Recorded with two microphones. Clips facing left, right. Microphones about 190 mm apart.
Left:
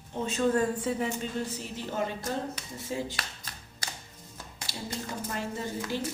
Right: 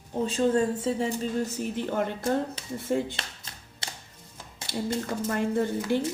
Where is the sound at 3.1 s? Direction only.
25° right (ahead or behind).